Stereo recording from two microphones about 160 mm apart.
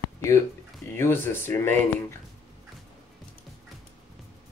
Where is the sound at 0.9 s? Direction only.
15° left (ahead or behind).